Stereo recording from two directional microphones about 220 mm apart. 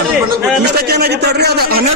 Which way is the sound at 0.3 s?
45° right (ahead or behind).